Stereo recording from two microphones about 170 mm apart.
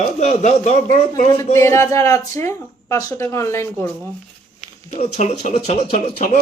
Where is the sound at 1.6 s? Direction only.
15° left (ahead or behind).